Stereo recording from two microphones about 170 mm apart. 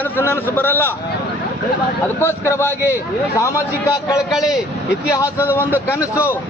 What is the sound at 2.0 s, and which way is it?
A man's voice, 15° left (ahead or behind).